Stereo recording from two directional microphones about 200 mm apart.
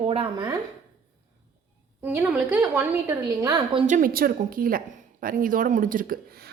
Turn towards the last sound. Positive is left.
turn(degrees=-45)  # may be behind; listen again after turning